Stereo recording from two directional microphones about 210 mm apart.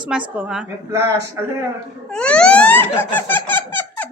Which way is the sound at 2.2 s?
5° left (ahead or behind).